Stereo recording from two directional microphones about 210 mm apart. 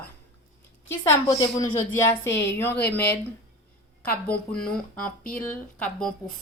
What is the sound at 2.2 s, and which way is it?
Speech, 10° left (ahead or behind).